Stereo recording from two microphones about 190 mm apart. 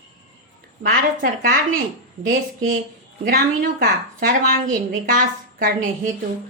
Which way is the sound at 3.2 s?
50° right (ahead or behind).